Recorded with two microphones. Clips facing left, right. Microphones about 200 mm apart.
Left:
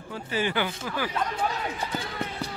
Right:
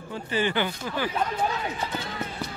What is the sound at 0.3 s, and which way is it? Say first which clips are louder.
Speech: right 1 dB; 5° left (ahead or behind).